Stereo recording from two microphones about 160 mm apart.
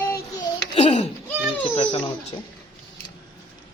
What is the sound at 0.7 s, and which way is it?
Speech, 45° left (ahead or behind).